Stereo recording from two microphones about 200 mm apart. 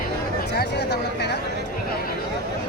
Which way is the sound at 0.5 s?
55° left (ahead or behind).